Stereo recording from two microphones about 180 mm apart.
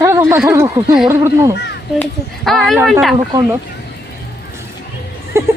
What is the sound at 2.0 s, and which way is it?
Speech, centre (ahead or behind).